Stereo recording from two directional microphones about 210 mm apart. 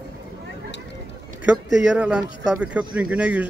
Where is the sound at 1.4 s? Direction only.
5° right (ahead or behind).